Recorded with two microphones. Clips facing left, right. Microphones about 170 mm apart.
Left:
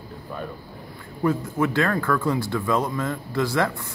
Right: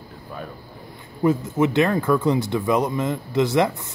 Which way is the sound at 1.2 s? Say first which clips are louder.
Right 3 dB; 20° right (ahead or behind).